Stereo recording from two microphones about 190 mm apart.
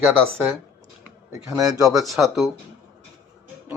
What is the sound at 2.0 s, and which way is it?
Speech, centre (ahead or behind).